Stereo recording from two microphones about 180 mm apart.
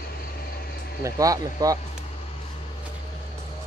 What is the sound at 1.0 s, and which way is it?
Speech, 20° right (ahead or behind).